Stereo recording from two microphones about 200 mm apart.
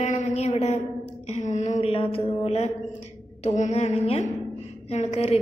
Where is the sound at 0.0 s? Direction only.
35° left (ahead or behind).